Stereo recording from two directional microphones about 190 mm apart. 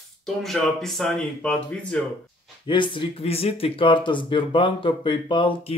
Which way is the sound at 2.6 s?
25° left (ahead or behind).